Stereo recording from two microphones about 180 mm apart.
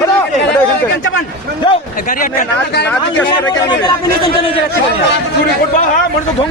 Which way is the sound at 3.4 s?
20° left (ahead or behind).